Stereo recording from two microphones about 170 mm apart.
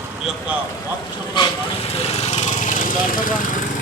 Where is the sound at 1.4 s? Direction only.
35° left (ahead or behind).